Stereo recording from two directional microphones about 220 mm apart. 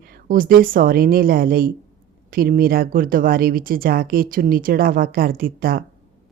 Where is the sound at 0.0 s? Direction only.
40° right (ahead or behind).